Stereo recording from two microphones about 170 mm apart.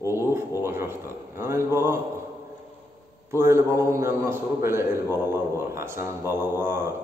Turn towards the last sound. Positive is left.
turn(degrees=-15)  # may be behind; listen again after turning